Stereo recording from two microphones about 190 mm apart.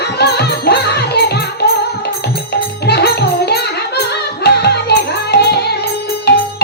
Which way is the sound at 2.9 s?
60° left (ahead or behind).